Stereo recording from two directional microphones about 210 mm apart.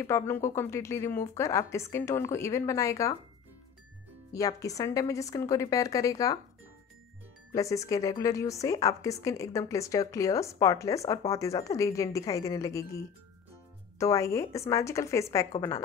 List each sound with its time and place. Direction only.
0.0 s a woman's voice: 15° left (ahead or behind)
4.3 s a woman's voice: 15° left (ahead or behind)
7.5 s a woman's voice: 15° left (ahead or behind)